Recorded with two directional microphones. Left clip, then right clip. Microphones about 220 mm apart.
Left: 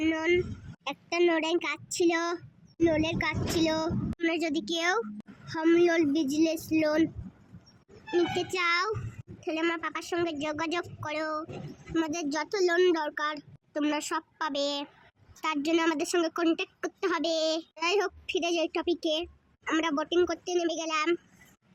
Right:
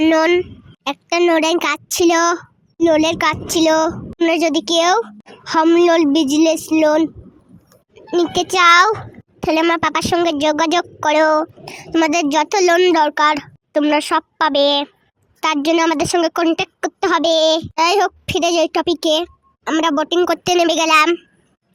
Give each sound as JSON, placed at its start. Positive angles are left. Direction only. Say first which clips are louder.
{"t": 0.0, "sound": "a woman's voice", "louder": "right 14 dB", "side_deg": -40}
{"t": 8.1, "sound": "a woman's voice", "louder": "right 12 dB", "side_deg": -35}